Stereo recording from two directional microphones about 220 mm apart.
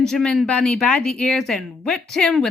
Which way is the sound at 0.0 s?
Centre (ahead or behind).